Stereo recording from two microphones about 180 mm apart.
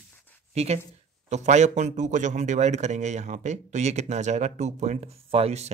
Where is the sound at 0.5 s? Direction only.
35° right (ahead or behind).